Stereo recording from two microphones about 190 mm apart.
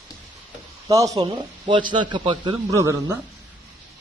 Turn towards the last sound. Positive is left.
turn(degrees=-15)  # may be behind; listen again after turning